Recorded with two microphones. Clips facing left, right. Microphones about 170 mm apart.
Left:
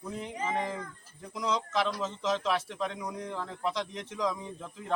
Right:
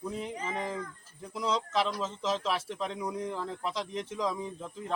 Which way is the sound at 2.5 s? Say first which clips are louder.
Left 2 dB; 5° right (ahead or behind).